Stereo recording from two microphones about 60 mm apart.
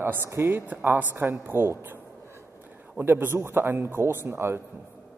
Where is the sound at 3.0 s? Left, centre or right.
Right.